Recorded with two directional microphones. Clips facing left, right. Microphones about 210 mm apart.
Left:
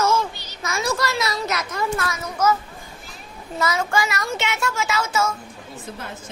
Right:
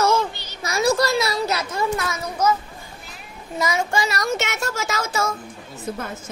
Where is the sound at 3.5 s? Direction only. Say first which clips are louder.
Even; 15° right (ahead or behind).